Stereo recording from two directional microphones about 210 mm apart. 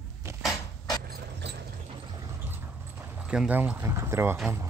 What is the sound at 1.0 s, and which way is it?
Keys jangling, 50° right (ahead or behind).